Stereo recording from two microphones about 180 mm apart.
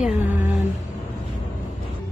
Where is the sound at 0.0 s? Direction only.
10° right (ahead or behind).